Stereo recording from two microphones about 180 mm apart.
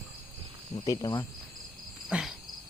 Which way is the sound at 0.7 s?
25° left (ahead or behind).